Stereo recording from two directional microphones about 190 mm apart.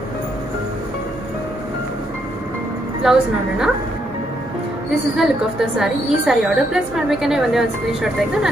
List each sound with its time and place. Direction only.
3.0 s a woman's voice: 5° right (ahead or behind)
5.1 s a woman's voice: centre (ahead or behind)